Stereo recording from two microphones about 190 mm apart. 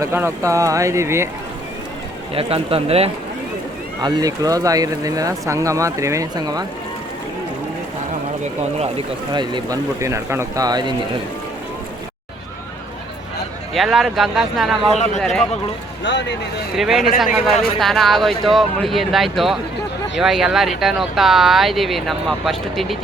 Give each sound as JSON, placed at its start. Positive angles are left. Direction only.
{"t": 0.0, "sound": "speech", "side_deg": -10}
{"t": 2.3, "sound": "speech", "side_deg": -30}
{"t": 4.0, "sound": "speech", "side_deg": -20}
{"t": 9.3, "sound": "speech", "side_deg": -25}
{"t": 13.7, "sound": "speech", "side_deg": 0}
{"t": 16.7, "sound": "speech", "side_deg": 0}